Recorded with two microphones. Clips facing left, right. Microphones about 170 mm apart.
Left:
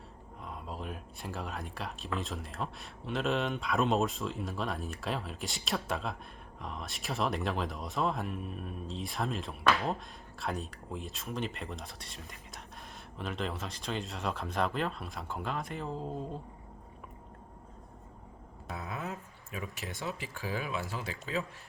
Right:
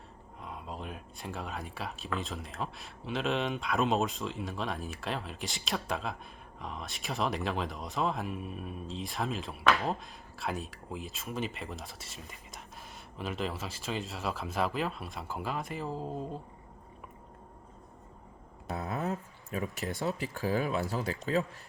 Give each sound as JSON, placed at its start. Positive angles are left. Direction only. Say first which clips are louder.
{"t": 0.4, "sound": "speech", "louder": "even", "side_deg": 0}
{"t": 18.7, "sound": "speech", "louder": "right 5 dB", "side_deg": -40}